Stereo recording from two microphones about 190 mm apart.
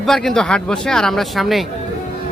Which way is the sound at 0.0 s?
Centre (ahead or behind).